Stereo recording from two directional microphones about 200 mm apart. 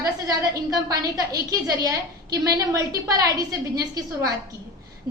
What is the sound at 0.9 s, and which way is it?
A woman's voice, 20° right (ahead or behind).